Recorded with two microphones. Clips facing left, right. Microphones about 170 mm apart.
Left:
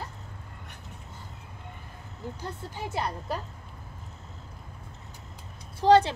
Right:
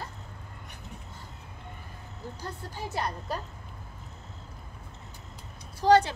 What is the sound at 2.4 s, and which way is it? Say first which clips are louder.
Speech: even; 25° left (ahead or behind).